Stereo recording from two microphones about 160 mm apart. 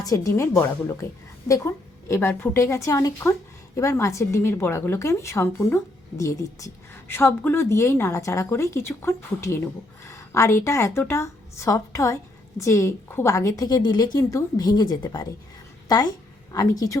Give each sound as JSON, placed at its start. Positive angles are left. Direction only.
{"t": 0.0, "sound": "a woman's voice", "side_deg": 20}
{"t": 16.5, "sound": "a woman's voice", "side_deg": 20}